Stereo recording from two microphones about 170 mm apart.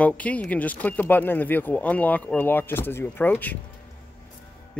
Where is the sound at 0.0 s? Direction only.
10° left (ahead or behind).